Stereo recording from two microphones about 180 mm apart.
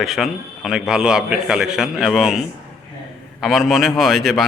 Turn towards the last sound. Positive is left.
turn(degrees=0)  # may be behind; listen again after turning